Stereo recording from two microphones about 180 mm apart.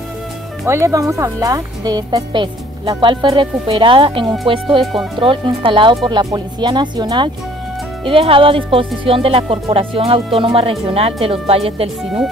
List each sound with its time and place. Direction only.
0.7 s speech: 15° right (ahead or behind); by 11.9 s 35° right (ahead or behind)